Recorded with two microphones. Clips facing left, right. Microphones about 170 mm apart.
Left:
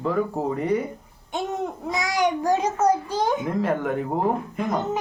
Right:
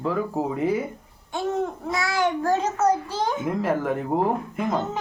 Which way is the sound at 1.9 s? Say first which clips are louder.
Left 1 dB; 15° left (ahead or behind).